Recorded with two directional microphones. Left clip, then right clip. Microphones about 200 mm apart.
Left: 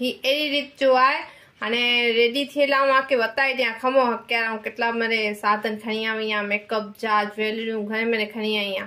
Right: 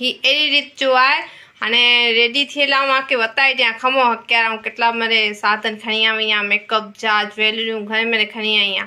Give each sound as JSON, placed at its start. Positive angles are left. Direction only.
{"t": 0.0, "sound": "a woman's voice", "side_deg": 5}